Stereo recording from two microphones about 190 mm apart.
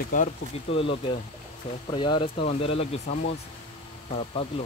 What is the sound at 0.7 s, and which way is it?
Speech, 30° left (ahead or behind).